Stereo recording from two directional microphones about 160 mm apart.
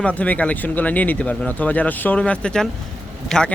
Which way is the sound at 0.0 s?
10° left (ahead or behind).